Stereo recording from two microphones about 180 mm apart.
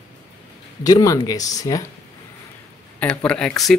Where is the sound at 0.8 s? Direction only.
20° left (ahead or behind).